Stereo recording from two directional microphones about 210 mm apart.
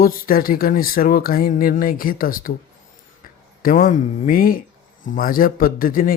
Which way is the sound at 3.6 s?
40° left (ahead or behind).